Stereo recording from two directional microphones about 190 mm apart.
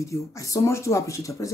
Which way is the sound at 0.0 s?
15° left (ahead or behind).